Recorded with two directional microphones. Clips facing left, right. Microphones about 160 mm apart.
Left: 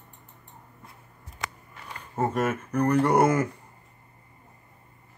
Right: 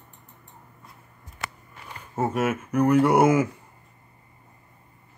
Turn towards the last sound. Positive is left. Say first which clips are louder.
# right 3 dB
turn(degrees=-5)  # may be behind; listen again after turning